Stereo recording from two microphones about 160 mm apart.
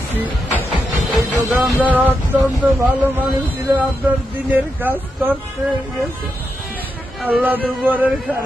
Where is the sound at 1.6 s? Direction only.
10° right (ahead or behind).